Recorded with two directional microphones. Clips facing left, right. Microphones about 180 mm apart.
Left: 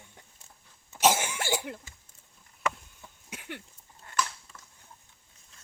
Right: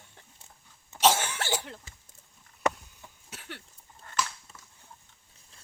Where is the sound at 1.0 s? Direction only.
10° left (ahead or behind).